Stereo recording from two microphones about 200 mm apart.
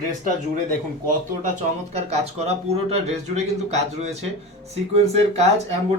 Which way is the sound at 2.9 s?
35° right (ahead or behind).